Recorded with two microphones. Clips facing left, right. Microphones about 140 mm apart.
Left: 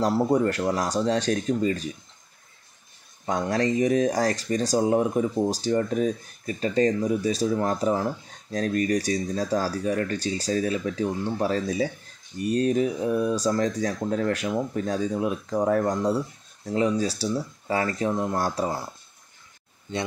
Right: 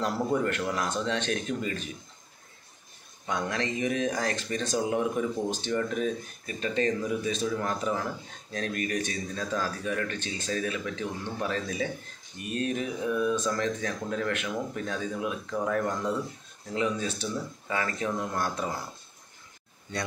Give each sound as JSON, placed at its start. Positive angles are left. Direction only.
{"t": 0.0, "sound": "speech", "side_deg": 30}
{"t": 3.3, "sound": "speech", "side_deg": 40}